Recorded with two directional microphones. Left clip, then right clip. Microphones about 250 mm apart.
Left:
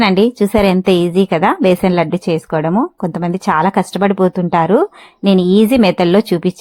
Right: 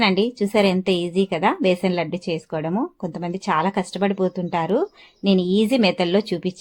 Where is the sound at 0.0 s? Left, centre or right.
Centre.